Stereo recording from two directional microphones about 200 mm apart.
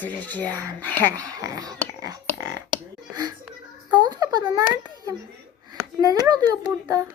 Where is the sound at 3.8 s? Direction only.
20° right (ahead or behind).